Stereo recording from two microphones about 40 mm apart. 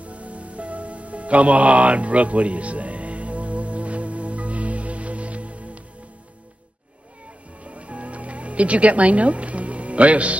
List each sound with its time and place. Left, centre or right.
0.0 s music: right
7.6 s music: right